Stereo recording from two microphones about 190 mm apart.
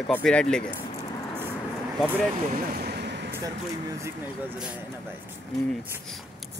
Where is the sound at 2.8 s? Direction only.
60° right (ahead or behind).